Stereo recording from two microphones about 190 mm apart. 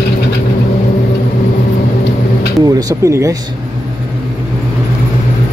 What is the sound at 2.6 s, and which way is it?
Speech, 15° right (ahead or behind).